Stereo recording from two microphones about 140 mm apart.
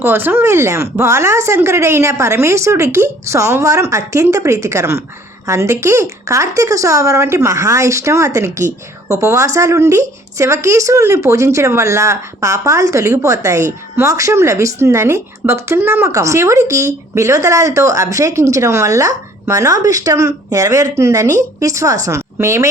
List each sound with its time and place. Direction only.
0.0 s speech: 15° right (ahead or behind)